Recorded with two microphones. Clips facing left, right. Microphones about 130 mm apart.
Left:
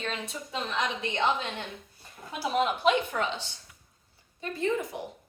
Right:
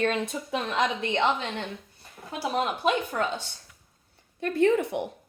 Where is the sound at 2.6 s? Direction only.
45° right (ahead or behind).